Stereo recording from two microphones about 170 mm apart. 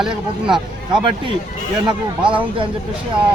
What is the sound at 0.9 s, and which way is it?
Speech, 30° right (ahead or behind).